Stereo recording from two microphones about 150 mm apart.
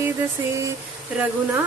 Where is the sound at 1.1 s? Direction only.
10° right (ahead or behind).